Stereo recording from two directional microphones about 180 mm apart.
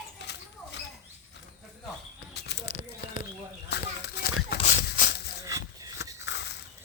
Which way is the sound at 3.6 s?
65° left (ahead or behind).